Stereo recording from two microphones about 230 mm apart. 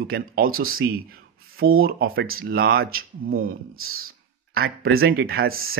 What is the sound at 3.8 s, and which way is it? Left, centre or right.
Speech, right.